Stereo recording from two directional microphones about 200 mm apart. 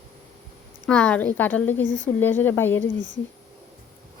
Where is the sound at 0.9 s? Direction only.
5° left (ahead or behind).